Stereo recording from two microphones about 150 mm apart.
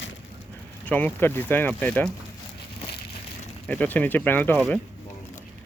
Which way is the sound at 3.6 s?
10° left (ahead or behind).